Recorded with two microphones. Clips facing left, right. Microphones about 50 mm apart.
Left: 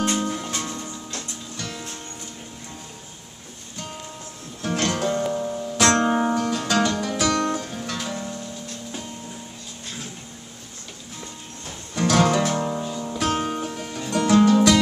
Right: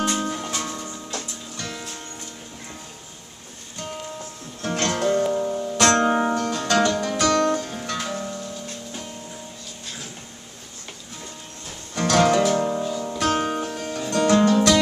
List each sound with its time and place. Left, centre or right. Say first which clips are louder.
0.2 s music: even; centre
4.6 s music: even; centre
6.3 s music: right 1 dB; centre
11.9 s music: right 1 dB; centre